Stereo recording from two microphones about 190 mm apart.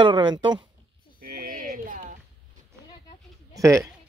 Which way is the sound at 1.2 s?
50° right (ahead or behind).